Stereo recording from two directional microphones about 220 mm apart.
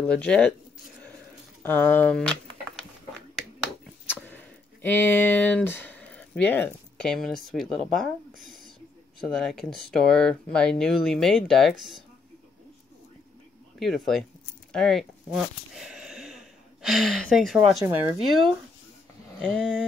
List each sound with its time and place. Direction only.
0.0 s speech: 5° left (ahead or behind)
1.6 s speech: 10° left (ahead or behind)
4.1 s speech: 10° left (ahead or behind)
8.3 s a sound: 40° right (ahead or behind)
9.2 s speech: 5° left (ahead or behind)
13.7 s speech: centre (ahead or behind)